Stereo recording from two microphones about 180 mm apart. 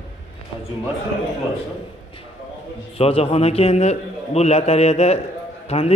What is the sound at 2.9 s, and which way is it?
A man's voice, 35° left (ahead or behind).